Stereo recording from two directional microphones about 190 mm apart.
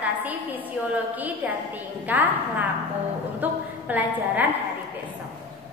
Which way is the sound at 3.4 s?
10° right (ahead or behind).